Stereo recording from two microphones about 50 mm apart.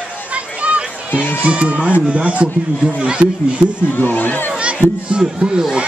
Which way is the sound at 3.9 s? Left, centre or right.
Left.